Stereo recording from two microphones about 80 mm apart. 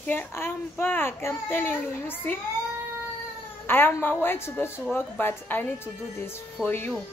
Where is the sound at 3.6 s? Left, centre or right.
Left.